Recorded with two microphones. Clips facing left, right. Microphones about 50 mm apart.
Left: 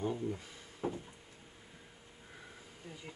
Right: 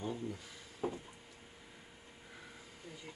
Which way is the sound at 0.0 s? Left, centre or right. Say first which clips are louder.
Left 4 dB; left.